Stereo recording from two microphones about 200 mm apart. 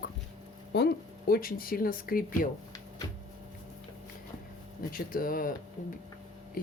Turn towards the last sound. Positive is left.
turn(degrees=45)  # may be behind; listen again after turning